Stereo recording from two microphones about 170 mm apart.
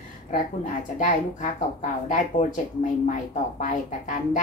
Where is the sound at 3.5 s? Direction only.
50° left (ahead or behind).